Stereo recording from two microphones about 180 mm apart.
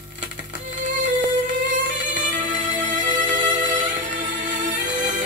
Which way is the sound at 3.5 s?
25° right (ahead or behind).